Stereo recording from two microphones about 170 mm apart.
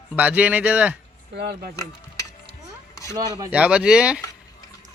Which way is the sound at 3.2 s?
20° right (ahead or behind).